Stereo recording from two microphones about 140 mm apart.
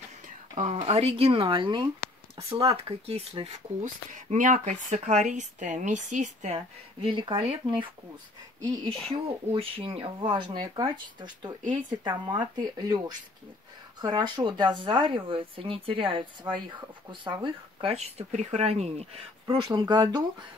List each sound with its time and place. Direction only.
0.6 s speech: 55° right (ahead or behind)
3.5 s speech: 60° right (ahead or behind)
7.0 s speech: 35° right (ahead or behind)
9.1 s speech: 40° right (ahead or behind)
19.4 s speech: 30° right (ahead or behind)